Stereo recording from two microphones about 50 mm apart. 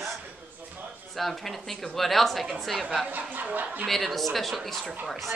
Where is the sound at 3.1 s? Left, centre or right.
Right.